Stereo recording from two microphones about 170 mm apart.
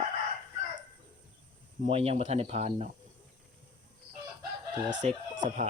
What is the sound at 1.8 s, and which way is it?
Speech, 40° right (ahead or behind).